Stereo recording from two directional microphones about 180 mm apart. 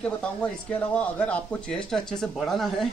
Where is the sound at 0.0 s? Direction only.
5° left (ahead or behind).